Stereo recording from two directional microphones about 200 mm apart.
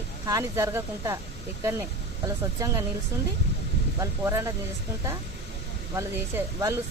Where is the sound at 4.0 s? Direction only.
15° right (ahead or behind).